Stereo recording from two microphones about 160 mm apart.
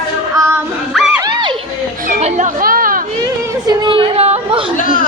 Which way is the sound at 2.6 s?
60° right (ahead or behind).